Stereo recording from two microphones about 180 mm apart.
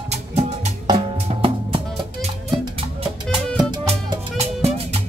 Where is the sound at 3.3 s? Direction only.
25° right (ahead or behind).